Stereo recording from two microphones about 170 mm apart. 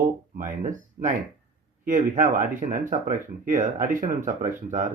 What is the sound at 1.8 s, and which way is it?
Speech, 50° right (ahead or behind).